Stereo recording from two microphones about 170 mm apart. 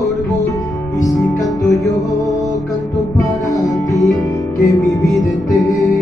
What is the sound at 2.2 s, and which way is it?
Music, centre (ahead or behind).